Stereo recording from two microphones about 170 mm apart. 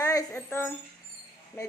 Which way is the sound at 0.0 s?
20° left (ahead or behind).